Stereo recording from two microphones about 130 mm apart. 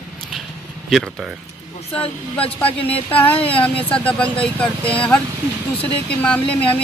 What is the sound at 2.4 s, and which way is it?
Speech, 45° left (ahead or behind).